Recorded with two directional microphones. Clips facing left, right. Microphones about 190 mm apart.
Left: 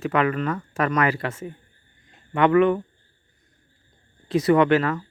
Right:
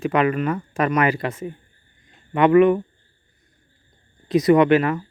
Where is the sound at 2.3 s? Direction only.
15° right (ahead or behind).